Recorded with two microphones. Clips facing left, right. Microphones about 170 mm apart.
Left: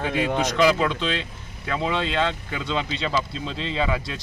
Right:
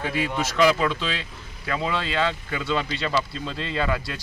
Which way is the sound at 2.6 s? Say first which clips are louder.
Even; 20° left (ahead or behind).